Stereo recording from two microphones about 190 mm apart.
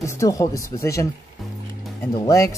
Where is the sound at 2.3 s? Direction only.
15° left (ahead or behind).